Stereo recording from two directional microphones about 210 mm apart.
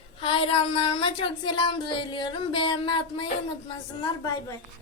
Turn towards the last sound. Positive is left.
turn(degrees=15)  # may be behind; listen again after turning